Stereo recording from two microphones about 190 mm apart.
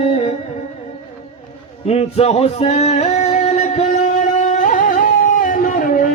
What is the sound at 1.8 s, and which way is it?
Male singing, 35° left (ahead or behind).